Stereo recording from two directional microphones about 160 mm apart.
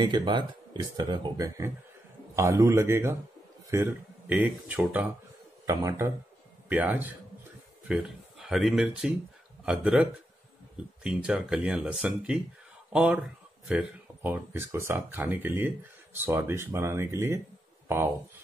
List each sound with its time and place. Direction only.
0.0 s speech: 25° right (ahead or behind); by 5.0 s 10° right (ahead or behind)
5.7 s speech: 20° right (ahead or behind)
6.7 s speech: 10° right (ahead or behind)